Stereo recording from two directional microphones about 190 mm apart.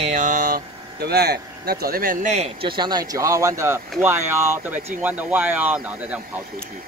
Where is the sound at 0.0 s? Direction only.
40° right (ahead or behind).